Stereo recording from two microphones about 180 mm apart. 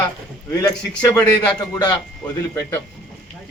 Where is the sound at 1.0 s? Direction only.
10° left (ahead or behind).